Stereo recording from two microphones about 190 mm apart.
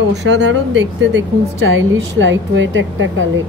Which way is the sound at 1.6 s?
85° right.